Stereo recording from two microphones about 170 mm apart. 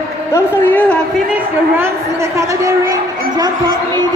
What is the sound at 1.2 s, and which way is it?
A woman's voice, 10° right (ahead or behind).